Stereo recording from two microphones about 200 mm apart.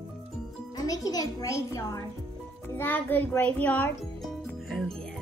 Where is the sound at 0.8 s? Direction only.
20° left (ahead or behind); by 4.9 s centre (ahead or behind).